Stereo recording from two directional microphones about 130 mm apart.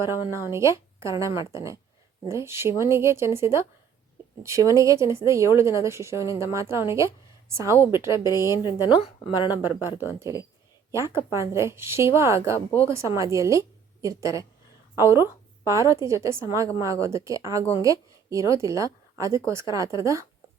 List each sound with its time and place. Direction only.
0.0 s a woman's voice: 20° right (ahead or behind)
8.2 s a woman's voice: 30° left (ahead or behind)
9.6 s a woman's voice: 15° right (ahead or behind)